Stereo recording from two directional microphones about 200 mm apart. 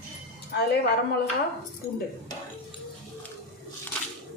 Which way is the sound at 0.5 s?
55° left (ahead or behind).